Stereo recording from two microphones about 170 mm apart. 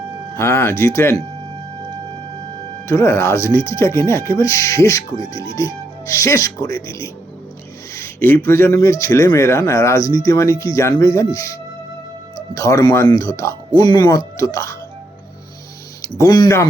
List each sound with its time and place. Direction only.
0.3 s speech: 15° left (ahead or behind)
2.8 s speech: 15° left (ahead or behind)
7.9 s a sound: 15° left (ahead or behind)
8.4 s speech: 15° left (ahead or behind)
12.5 s speech: 20° left (ahead or behind)
16.0 s speech: 20° left (ahead or behind)